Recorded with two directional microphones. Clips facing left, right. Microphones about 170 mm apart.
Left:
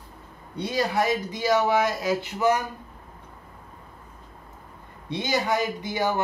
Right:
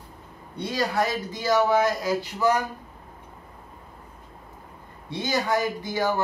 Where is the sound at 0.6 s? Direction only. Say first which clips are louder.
Left 1 dB; 20° left (ahead or behind).